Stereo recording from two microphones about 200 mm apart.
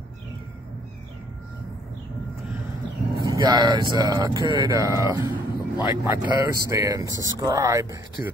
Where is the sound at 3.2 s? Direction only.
20° right (ahead or behind).